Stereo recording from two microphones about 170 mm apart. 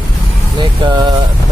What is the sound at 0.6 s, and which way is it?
Vehicle, 25° right (ahead or behind).